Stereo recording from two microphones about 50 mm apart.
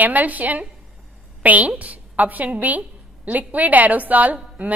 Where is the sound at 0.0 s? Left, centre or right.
Right.